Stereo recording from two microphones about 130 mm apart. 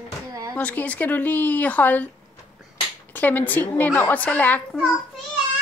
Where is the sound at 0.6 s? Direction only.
10° left (ahead or behind).